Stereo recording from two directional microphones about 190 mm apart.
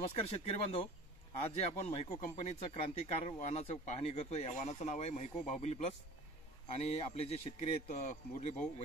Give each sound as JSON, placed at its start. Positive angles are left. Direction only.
{"t": 0.2, "sound": "speech", "side_deg": 30}